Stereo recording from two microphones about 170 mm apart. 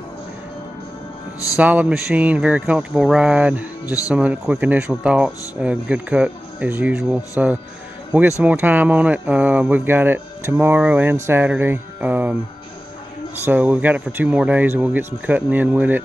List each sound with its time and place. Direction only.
1.6 s speech: 10° right (ahead or behind)
3.8 s speech: 20° left (ahead or behind)
4.1 s speech: 10° right (ahead or behind)
13.5 s speech: 10° right (ahead or behind)